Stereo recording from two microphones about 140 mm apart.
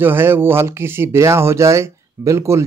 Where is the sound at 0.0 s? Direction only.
15° right (ahead or behind).